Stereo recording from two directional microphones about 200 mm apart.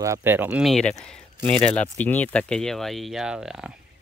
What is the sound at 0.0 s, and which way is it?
Speech, 10° right (ahead or behind).